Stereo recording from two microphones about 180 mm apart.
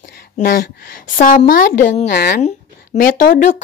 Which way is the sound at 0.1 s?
60° left (ahead or behind).